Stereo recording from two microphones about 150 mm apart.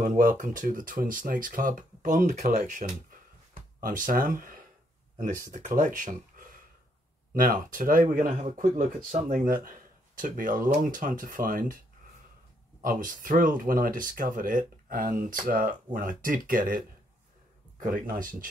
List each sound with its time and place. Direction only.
0.0 s speech: 65° right (ahead or behind)
12.8 s speech: 65° right (ahead or behind)